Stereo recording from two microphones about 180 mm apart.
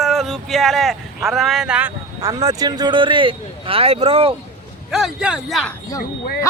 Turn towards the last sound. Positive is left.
turn(degrees=20)  # may be behind; listen again after turning